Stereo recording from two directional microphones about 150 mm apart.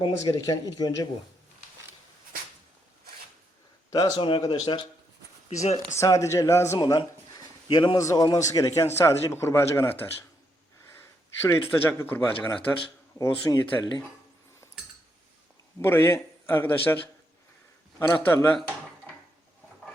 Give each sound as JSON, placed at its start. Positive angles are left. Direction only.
{"t": 0.0, "sound": "a man's voice", "side_deg": 25}
{"t": 3.9, "sound": "speech", "side_deg": 30}
{"t": 5.5, "sound": "speech", "side_deg": 50}
{"t": 5.9, "sound": "a man's voice", "side_deg": 20}
{"t": 11.4, "sound": "speech", "side_deg": 15}
{"t": 13.1, "sound": "a man's voice", "side_deg": 25}
{"t": 15.8, "sound": "speech", "side_deg": 15}
{"t": 18.0, "sound": "speech", "side_deg": 20}